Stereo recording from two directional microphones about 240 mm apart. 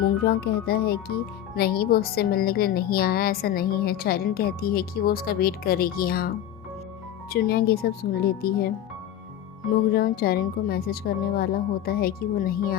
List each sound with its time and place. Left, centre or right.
0.0 s a child's voice: left
9.9 s a child's voice: left